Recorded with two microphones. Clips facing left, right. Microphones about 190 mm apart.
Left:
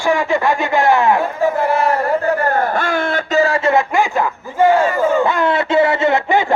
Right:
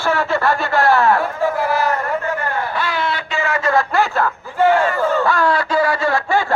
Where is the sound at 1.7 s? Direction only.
30° left (ahead or behind).